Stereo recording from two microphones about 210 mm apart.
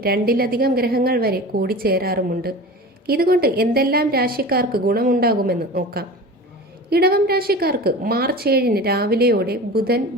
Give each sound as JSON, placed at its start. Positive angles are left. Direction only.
{"t": 0.0, "sound": "a woman's voice", "side_deg": -45}